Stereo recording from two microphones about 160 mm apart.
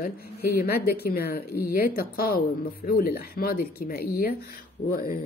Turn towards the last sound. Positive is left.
turn(degrees=65)  # may be behind; listen again after turning